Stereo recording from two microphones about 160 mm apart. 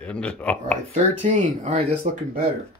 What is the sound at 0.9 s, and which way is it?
Speech, 45° right (ahead or behind).